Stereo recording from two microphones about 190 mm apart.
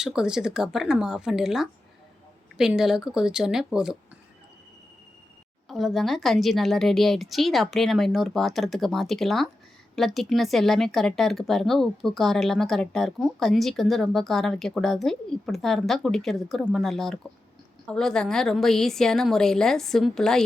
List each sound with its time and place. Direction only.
0.0 s speech: 5° right (ahead or behind)
5.6 s speech: centre (ahead or behind)